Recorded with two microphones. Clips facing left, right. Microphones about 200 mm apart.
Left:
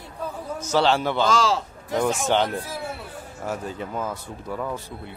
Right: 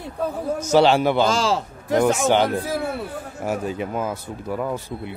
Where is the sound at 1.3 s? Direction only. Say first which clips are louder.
Right 1 dB; 30° right (ahead or behind).